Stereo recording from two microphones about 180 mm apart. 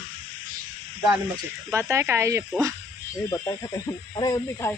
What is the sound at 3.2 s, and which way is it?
Speech, 20° left (ahead or behind).